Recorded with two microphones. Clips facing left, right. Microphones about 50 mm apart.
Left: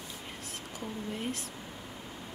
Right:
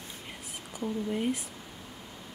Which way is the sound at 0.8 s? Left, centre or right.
Centre.